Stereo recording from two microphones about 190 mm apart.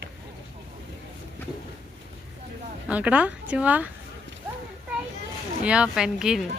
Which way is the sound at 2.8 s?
5° right (ahead or behind).